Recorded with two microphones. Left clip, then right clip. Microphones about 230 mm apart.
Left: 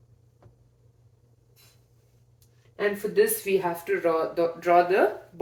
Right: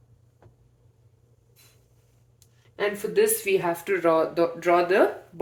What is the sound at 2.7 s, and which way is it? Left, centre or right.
Speech, right.